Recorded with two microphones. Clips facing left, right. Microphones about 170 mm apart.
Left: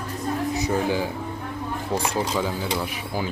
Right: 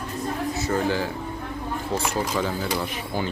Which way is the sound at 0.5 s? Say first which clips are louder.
Even; 15° left (ahead or behind).